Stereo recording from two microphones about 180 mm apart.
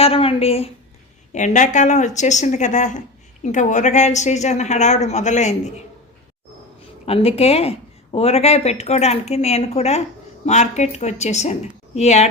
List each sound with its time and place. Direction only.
0.0 s speech: 30° left (ahead or behind)
7.0 s speech: 35° left (ahead or behind)